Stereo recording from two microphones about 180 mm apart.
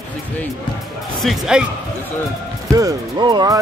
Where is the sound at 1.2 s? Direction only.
5° right (ahead or behind).